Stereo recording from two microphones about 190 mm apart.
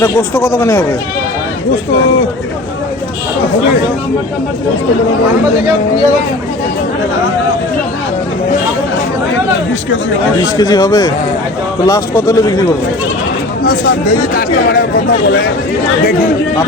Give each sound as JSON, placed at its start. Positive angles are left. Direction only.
{"t": 0.0, "sound": "speech", "side_deg": 10}
{"t": 10.6, "sound": "speech", "side_deg": 20}
{"t": 13.7, "sound": "speech", "side_deg": 50}